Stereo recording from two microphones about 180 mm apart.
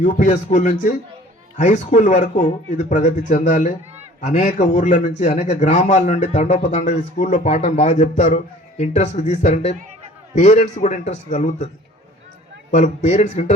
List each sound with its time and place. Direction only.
0.0 s a man's voice: 45° left (ahead or behind)
12.7 s a man's voice: 40° left (ahead or behind)